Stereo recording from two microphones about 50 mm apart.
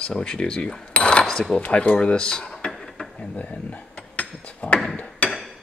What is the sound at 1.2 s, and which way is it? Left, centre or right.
Cutlery, centre.